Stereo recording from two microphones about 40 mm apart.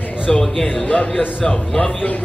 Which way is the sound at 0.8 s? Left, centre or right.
Left.